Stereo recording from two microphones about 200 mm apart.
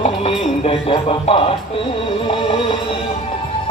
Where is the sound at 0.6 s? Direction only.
30° left (ahead or behind).